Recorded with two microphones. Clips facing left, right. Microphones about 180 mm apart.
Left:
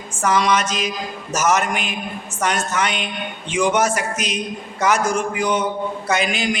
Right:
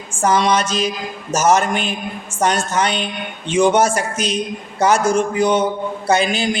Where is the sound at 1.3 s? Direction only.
30° right (ahead or behind).